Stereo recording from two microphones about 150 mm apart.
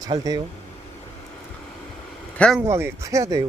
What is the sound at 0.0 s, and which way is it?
Speech, 25° right (ahead or behind).